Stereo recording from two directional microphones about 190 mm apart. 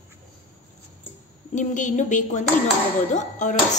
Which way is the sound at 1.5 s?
40° left (ahead or behind).